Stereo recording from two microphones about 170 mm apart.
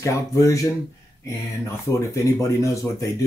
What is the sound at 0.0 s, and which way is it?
Speech, 20° left (ahead or behind).